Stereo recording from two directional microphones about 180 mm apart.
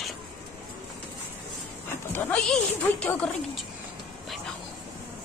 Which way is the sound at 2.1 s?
5° left (ahead or behind).